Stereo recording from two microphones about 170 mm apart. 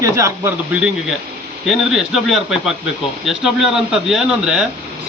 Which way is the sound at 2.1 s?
5° right (ahead or behind).